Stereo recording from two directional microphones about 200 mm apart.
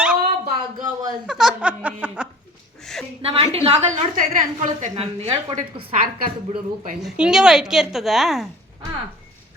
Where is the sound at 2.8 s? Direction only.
Centre (ahead or behind).